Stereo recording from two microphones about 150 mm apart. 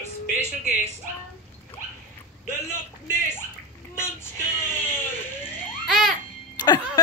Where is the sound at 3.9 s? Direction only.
15° left (ahead or behind).